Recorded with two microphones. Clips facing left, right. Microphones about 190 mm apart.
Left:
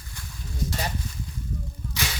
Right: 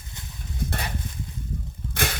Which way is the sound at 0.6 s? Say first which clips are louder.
Left 1 dB; 55° right (ahead or behind).